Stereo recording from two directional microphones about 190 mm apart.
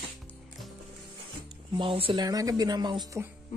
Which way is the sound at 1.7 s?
25° right (ahead or behind).